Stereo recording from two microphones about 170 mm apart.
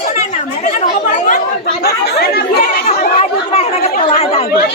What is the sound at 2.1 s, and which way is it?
Chatter, 65° left (ahead or behind).